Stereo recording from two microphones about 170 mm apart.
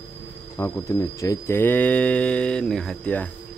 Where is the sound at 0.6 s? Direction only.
15° left (ahead or behind).